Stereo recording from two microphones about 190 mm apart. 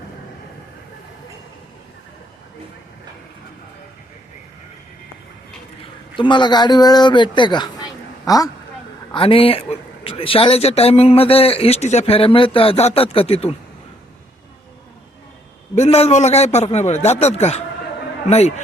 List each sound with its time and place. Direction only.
6.1 s speech: 25° left (ahead or behind)
9.1 s speech: 30° left (ahead or behind)
15.7 s speech: 35° left (ahead or behind)